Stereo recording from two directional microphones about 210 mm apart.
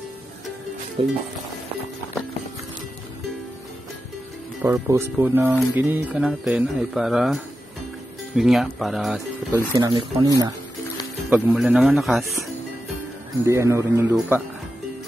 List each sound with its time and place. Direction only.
1.0 s speech: 25° right (ahead or behind)
4.6 s speech: 10° right (ahead or behind)
8.4 s speech: centre (ahead or behind)
9.8 s speech: 20° right (ahead or behind); by 12.4 s centre (ahead or behind)
13.5 s speech: 15° right (ahead or behind)